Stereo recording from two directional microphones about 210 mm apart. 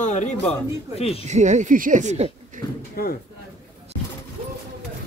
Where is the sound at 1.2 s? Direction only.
35° right (ahead or behind).